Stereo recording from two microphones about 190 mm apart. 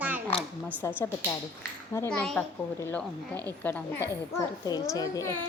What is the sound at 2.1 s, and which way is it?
Speech, 5° left (ahead or behind).